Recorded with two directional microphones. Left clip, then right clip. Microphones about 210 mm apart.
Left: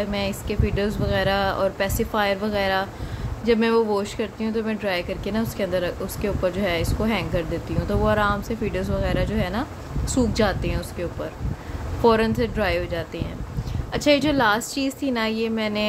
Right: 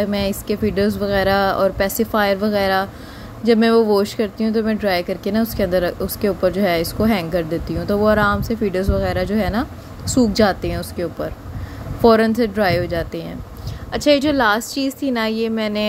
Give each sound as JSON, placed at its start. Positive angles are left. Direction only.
{"t": 0.0, "sound": "speech", "side_deg": -25}